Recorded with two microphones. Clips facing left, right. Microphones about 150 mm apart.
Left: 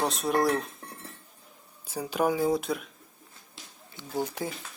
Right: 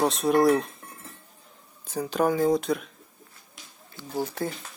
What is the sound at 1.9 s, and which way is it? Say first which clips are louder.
Speech: right 3 dB; 10° left (ahead or behind).